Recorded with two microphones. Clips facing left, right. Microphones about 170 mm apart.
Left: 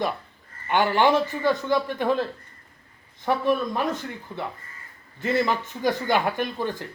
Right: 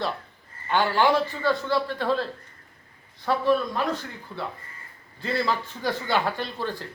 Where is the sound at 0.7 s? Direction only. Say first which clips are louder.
Left 2 dB; 15° left (ahead or behind).